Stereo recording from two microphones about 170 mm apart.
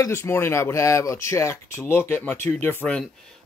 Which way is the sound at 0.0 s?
15° left (ahead or behind).